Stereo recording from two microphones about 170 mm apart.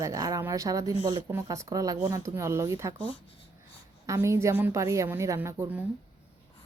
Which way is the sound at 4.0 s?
15° right (ahead or behind).